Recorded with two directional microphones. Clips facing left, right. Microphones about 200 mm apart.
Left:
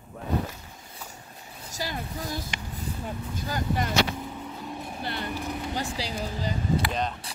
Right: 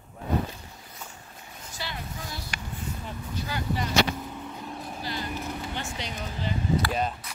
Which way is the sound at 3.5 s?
45° left (ahead or behind).